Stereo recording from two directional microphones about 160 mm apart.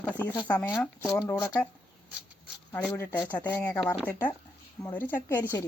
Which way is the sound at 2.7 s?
10° left (ahead or behind).